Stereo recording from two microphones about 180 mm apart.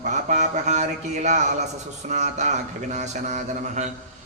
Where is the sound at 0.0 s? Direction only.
45° right (ahead or behind).